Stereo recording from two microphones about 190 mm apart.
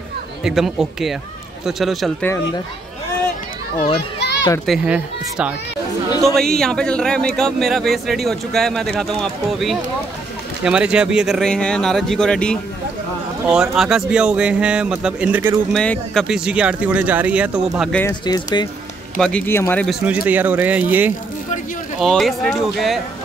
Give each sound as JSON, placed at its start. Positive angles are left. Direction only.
{"t": 0.4, "sound": "speech", "side_deg": 0}
{"t": 4.2, "sound": "children playing", "side_deg": 60}
{"t": 4.6, "sound": "speech", "side_deg": -5}
{"t": 15.7, "sound": "speech", "side_deg": 5}
{"t": 18.2, "sound": "speech", "side_deg": 25}
{"t": 19.1, "sound": "speech", "side_deg": 5}
{"t": 20.2, "sound": "speech", "side_deg": -10}